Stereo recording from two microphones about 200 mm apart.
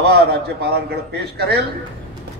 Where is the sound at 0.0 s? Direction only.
55° right (ahead or behind).